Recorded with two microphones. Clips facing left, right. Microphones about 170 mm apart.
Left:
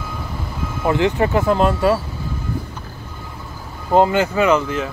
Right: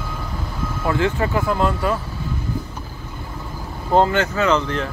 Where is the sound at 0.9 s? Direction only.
20° left (ahead or behind).